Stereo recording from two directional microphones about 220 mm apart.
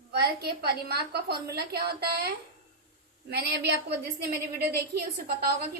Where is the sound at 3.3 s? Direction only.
50° right (ahead or behind).